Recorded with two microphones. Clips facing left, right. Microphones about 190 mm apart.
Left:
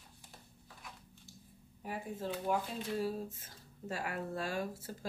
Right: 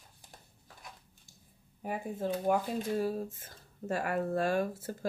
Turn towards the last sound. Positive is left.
turn(degrees=-55)  # may be behind; listen again after turning